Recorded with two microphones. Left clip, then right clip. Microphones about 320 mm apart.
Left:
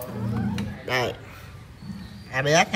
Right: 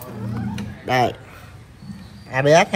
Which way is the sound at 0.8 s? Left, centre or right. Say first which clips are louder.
Right 7 dB; centre.